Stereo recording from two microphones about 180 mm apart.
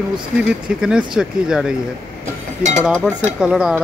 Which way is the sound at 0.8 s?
5° right (ahead or behind).